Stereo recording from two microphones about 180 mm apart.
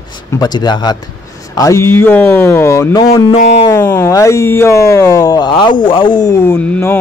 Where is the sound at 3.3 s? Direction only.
35° left (ahead or behind).